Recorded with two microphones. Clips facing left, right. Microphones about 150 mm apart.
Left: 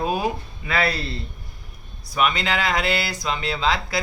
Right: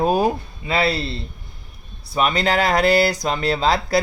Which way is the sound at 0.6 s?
25° right (ahead or behind).